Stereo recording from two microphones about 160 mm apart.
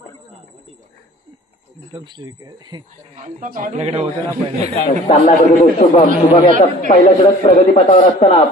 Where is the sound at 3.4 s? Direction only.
55° right (ahead or behind).